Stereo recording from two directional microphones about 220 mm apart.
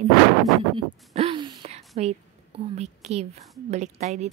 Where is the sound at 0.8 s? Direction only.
25° right (ahead or behind).